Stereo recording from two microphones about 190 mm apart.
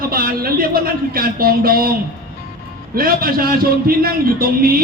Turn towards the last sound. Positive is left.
turn(degrees=-50)  # may be behind; listen again after turning